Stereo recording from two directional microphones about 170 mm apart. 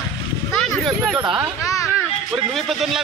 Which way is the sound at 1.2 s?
20° right (ahead or behind).